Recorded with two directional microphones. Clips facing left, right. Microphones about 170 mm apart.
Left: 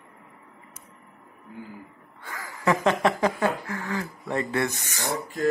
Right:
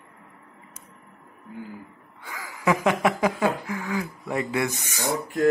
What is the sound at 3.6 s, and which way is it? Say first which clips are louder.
Speech: right 2 dB; 15° right (ahead or behind).